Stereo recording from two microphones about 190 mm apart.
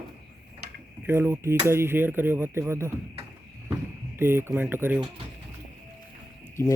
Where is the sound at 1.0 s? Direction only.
15° right (ahead or behind).